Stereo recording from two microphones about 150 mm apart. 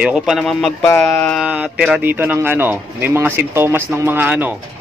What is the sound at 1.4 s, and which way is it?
Speech, 5° right (ahead or behind).